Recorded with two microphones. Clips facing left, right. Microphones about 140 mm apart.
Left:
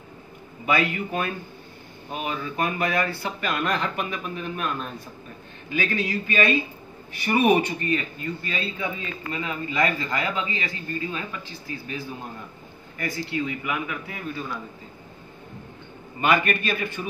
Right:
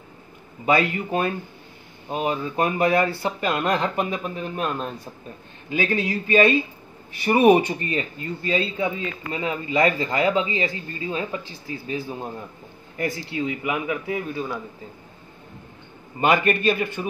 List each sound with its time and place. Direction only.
0.7 s speech: 35° right (ahead or behind)
12.9 s speech: 25° right (ahead or behind)
16.2 s speech: 30° right (ahead or behind)